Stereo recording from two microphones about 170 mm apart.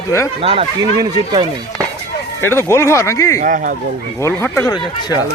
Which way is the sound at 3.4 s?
50° right (ahead or behind).